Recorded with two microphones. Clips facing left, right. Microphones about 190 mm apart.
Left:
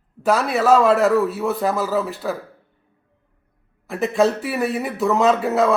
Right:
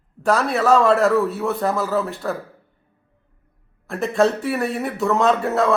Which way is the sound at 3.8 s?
Centre (ahead or behind).